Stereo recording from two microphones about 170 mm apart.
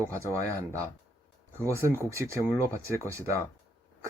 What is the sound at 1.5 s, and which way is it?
Speech, 15° right (ahead or behind).